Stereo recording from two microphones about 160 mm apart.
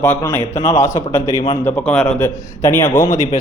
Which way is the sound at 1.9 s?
5° left (ahead or behind).